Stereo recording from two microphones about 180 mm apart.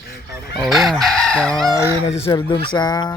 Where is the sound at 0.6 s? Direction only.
Centre (ahead or behind).